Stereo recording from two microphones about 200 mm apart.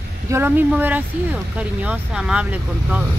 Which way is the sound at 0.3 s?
10° right (ahead or behind).